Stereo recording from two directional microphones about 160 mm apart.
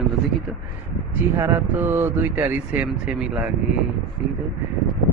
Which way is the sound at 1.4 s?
15° right (ahead or behind).